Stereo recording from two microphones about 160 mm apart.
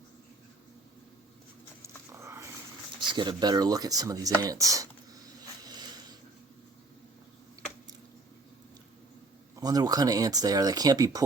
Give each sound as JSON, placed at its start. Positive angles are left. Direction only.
{"t": 1.8, "sound": "dog", "side_deg": -15}
{"t": 3.0, "sound": "speech", "side_deg": -30}
{"t": 5.6, "sound": "a sound", "side_deg": -25}
{"t": 9.6, "sound": "speech", "side_deg": -25}